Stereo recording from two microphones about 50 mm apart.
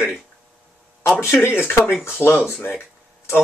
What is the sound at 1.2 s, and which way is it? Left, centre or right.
Speech, left.